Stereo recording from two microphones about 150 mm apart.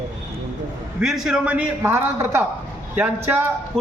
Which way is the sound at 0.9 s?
5° right (ahead or behind).